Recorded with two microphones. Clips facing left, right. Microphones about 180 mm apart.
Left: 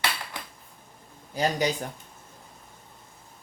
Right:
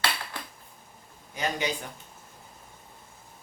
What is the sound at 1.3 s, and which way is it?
Speech, 35° left (ahead or behind).